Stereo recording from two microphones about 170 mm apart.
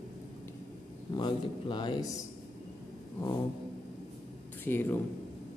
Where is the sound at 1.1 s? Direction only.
25° left (ahead or behind).